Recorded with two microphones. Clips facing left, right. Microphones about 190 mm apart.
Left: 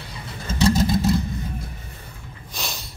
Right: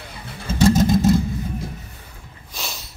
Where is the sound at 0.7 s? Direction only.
45° right (ahead or behind).